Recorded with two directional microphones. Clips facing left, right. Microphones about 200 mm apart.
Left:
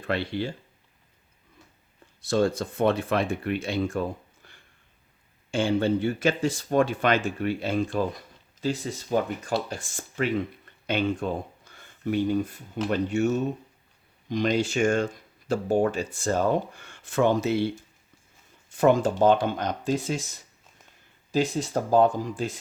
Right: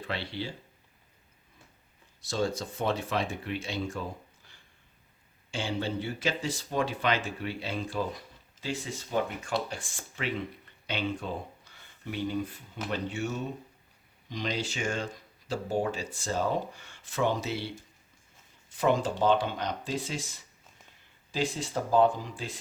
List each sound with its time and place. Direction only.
0.0 s speech: 50° left (ahead or behind)
2.2 s speech: 55° left (ahead or behind)
4.4 s a sound: 60° left (ahead or behind)
5.5 s speech: 50° left (ahead or behind)
8.6 s speech: 40° left (ahead or behind)
18.8 s speech: 45° left (ahead or behind)
21.3 s speech: 40° left (ahead or behind)